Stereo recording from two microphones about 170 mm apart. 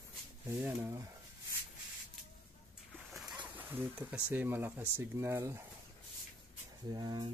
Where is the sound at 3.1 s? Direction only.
Centre (ahead or behind).